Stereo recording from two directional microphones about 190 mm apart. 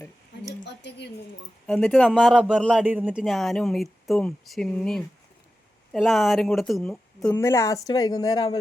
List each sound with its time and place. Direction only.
0.6 s speech: 65° left (ahead or behind)
1.6 s speech: 5° left (ahead or behind)
2.8 s speech: 10° right (ahead or behind)
7.3 s speech: 15° left (ahead or behind)